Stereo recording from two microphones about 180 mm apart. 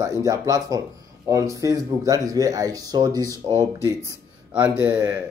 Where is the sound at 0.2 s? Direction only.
20° right (ahead or behind).